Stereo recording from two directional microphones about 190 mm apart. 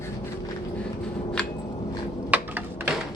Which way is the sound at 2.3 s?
10° right (ahead or behind).